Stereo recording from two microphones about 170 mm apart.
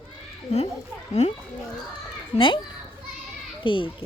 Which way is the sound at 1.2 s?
40° left (ahead or behind).